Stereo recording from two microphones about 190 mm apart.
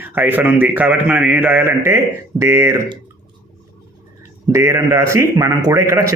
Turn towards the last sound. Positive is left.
turn(degrees=-15)  # may be behind; listen again after turning